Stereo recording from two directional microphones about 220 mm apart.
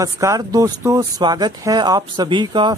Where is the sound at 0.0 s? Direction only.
15° right (ahead or behind).